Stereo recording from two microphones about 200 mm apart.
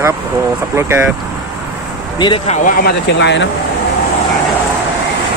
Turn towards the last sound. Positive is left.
turn(degrees=60)  # may be behind; listen again after turning